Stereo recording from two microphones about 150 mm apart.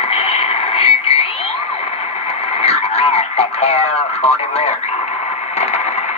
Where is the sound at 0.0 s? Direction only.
40° left (ahead or behind).